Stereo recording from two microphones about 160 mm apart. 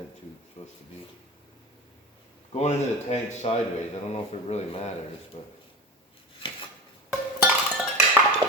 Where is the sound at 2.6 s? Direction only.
45° left (ahead or behind).